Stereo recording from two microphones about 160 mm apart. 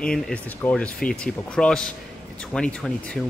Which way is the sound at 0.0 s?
5° left (ahead or behind).